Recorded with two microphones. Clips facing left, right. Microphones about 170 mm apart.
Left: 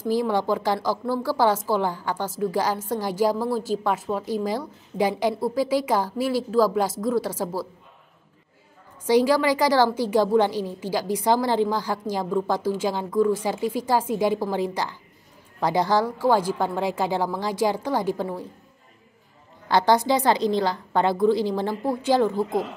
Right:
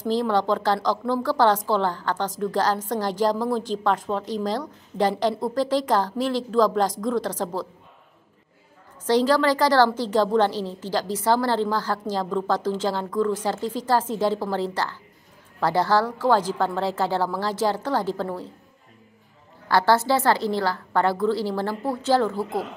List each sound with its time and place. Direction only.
0.1 s a woman's voice: 10° left (ahead or behind)
9.0 s a woman's voice: 10° left (ahead or behind)
19.7 s a woman's voice: 15° left (ahead or behind)